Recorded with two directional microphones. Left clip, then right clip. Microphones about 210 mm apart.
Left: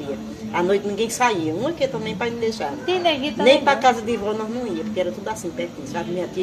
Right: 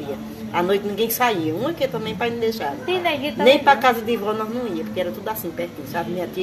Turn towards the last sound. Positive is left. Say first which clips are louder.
# right 1 dB
turn(degrees=0)  # may be behind; listen again after turning